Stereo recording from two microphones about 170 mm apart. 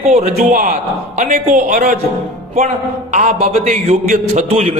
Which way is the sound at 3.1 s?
45° right (ahead or behind).